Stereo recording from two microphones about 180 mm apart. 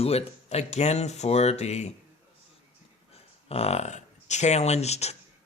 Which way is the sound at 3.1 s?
35° left (ahead or behind).